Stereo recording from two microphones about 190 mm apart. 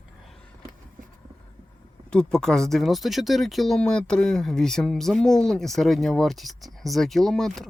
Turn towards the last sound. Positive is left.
turn(degrees=0)  # may be behind; listen again after turning